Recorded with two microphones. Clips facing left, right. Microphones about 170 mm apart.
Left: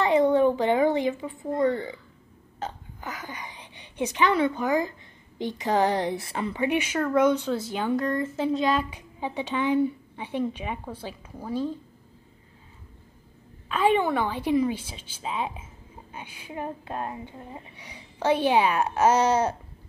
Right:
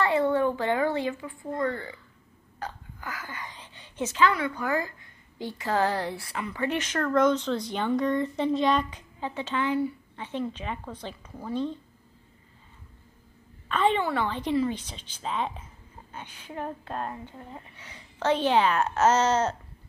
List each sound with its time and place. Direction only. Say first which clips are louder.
0.0 s a child's voice: left 4 dB; 20° left (ahead or behind)
2.6 s hiccup: left 2 dB; 20° left (ahead or behind)
5.4 s a woman's voice: left 3 dB; 20° left (ahead or behind)
6.6 s speech: left 2 dB; 10° left (ahead or behind)
13.7 s speech: left 2 dB; 10° left (ahead or behind)